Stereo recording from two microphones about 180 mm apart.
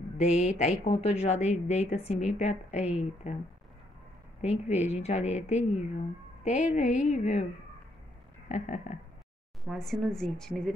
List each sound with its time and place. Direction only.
0.2 s a woman's voice: 40° left (ahead or behind)
4.4 s a woman's voice: 35° left (ahead or behind)
8.5 s a woman's voice: 40° left (ahead or behind)
9.7 s speech: centre (ahead or behind)